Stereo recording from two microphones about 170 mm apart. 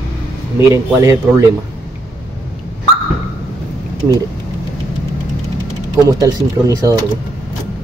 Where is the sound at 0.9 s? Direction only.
15° right (ahead or behind).